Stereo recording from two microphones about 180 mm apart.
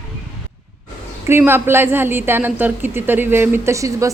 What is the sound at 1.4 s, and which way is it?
A man's voice, 15° right (ahead or behind).